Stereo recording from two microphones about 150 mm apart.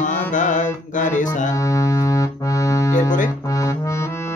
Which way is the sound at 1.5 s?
20° left (ahead or behind).